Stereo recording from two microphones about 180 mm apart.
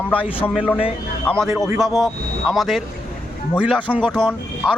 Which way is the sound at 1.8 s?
Centre (ahead or behind).